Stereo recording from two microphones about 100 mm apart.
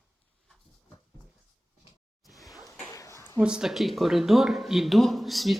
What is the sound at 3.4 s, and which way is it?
A man's voice, 5° right (ahead or behind).